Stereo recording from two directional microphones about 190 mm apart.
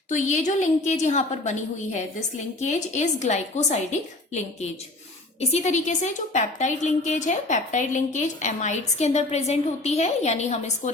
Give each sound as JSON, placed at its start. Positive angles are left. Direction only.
{"t": 0.1, "sound": "a woman's voice", "side_deg": 40}